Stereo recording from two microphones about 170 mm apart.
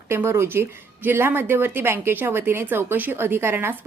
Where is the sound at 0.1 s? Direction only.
15° right (ahead or behind).